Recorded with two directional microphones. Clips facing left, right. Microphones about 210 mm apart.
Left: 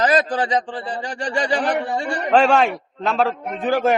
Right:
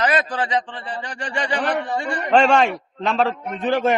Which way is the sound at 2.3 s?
5° left (ahead or behind).